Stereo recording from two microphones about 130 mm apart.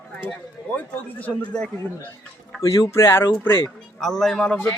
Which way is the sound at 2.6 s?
20° left (ahead or behind).